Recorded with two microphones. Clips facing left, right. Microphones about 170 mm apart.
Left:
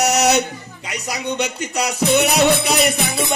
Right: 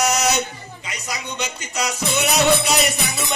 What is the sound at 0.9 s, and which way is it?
Music, 65° left (ahead or behind).